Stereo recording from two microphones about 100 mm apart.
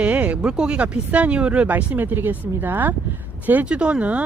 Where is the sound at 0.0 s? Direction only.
15° right (ahead or behind).